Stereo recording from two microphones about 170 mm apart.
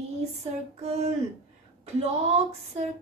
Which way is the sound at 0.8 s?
40° right (ahead or behind).